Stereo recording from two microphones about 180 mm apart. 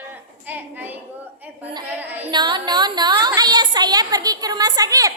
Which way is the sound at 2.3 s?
25° right (ahead or behind).